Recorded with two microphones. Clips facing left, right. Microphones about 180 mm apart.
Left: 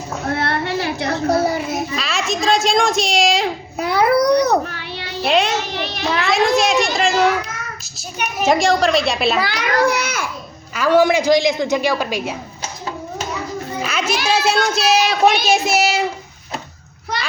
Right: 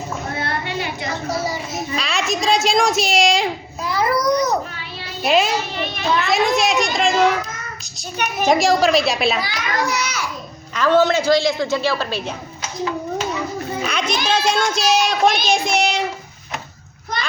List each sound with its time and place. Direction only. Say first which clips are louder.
0.3 s child singing: left 4 dB; 75° left (ahead or behind)
2.0 s speech: even; centre (ahead or behind)
3.8 s baby cry: left 6 dB; 65° left (ahead or behind)
4.4 s child singing: left 4 dB; 65° left (ahead or behind)
5.2 s speech: even; centre (ahead or behind)
6.6 s a sound: left 2 dB; centre (ahead or behind)
8.2 s speech: even; centre (ahead or behind)
9.4 s a child's voice: left 6 dB; 60° left (ahead or behind)
10.8 s a woman's voice: left 1 dB; 10° left (ahead or behind)
13.8 s speech: left 2 dB; 5° left (ahead or behind)